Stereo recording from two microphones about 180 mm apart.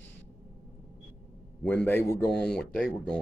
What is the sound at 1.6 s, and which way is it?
Speech, 10° left (ahead or behind).